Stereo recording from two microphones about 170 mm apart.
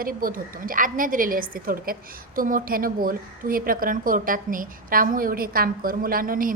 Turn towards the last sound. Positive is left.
turn(degrees=-55)  # may be behind; listen again after turning